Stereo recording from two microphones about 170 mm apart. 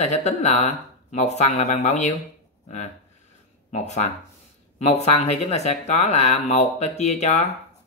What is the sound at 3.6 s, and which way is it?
Speech, 40° left (ahead or behind).